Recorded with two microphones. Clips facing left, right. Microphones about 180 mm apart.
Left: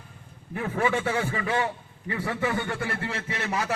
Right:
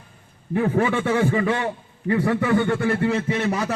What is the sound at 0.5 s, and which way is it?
A man's voice, 40° right (ahead or behind).